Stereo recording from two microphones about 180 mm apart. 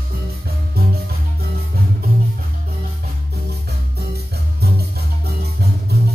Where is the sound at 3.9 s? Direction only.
60° right (ahead or behind).